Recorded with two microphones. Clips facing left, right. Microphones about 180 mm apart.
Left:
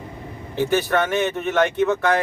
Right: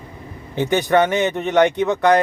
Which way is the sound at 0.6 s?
15° right (ahead or behind).